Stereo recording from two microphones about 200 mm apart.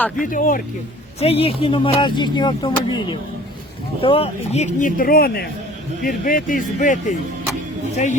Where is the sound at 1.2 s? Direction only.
30° left (ahead or behind).